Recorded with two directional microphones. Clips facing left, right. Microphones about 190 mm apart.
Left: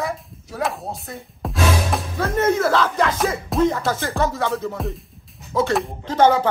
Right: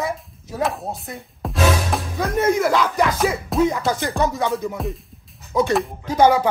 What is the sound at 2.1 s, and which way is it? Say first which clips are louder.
Speech: even; 15° right (ahead or behind).